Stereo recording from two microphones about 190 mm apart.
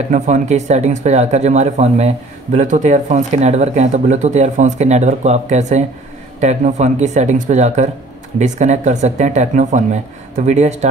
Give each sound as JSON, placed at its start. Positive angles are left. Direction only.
{"t": 0.1, "sound": "speech", "side_deg": -40}